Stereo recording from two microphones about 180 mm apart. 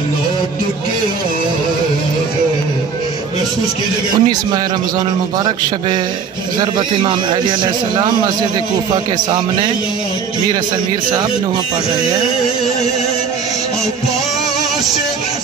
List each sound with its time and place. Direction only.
4.1 s speech: 25° right (ahead or behind)
6.6 s speech: 25° right (ahead or behind)